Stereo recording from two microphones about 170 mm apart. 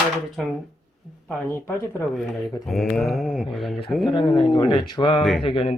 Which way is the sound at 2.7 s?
Centre (ahead or behind).